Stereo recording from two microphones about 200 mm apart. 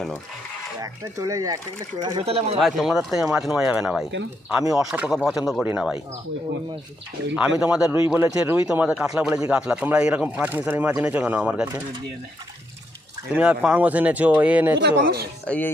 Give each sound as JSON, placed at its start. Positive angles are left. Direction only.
{"t": 0.8, "sound": "speech", "side_deg": -15}
{"t": 2.6, "sound": "speech", "side_deg": 0}
{"t": 7.3, "sound": "speech", "side_deg": -5}
{"t": 13.3, "sound": "speech", "side_deg": -5}
{"t": 14.8, "sound": "speech", "side_deg": -60}
{"t": 15.4, "sound": "speech", "side_deg": 5}